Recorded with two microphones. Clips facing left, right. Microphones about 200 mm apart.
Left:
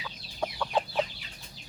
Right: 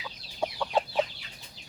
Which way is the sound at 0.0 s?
10° right (ahead or behind).